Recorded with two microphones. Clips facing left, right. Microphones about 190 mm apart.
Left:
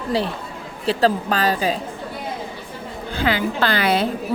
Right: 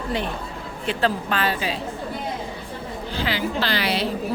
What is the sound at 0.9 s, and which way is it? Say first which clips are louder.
Speech: left 5 dB; 35° left (ahead or behind).